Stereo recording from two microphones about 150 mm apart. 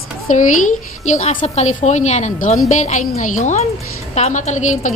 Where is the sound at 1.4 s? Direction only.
45° left (ahead or behind).